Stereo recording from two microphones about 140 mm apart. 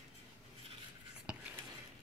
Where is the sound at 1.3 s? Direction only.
10° right (ahead or behind).